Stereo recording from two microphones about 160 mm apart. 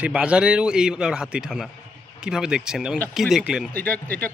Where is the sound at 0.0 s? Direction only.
5° right (ahead or behind).